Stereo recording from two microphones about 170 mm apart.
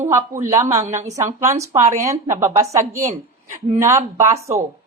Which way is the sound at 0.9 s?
45° right (ahead or behind).